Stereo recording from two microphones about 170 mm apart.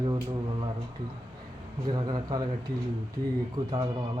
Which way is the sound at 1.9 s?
25° right (ahead or behind).